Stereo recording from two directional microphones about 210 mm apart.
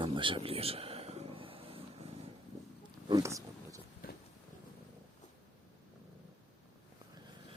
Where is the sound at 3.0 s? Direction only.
15° right (ahead or behind).